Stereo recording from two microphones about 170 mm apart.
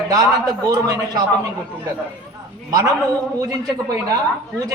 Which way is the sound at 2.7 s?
20° right (ahead or behind).